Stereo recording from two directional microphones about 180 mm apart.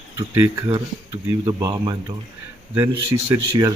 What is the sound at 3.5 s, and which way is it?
Speech, 20° right (ahead or behind).